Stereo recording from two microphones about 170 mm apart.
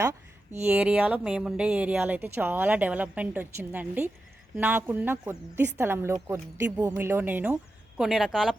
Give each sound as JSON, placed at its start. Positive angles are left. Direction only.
{"t": 0.7, "sound": "speech", "side_deg": -5}